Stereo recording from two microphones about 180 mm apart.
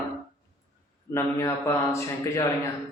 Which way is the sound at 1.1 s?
15° left (ahead or behind).